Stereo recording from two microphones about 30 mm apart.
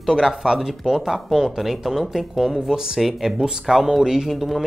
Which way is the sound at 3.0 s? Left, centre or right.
Centre.